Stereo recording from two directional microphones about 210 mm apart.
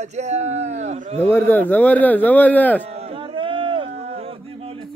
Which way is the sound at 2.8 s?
30° right (ahead or behind).